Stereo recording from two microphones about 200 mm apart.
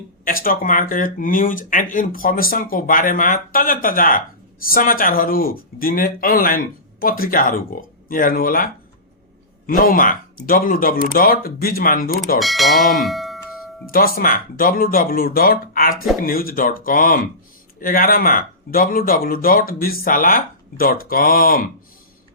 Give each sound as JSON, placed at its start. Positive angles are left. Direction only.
{"t": 0.3, "sound": "speech", "side_deg": 45}
{"t": 12.4, "sound": "speech", "side_deg": 0}
{"t": 13.9, "sound": "speech", "side_deg": 45}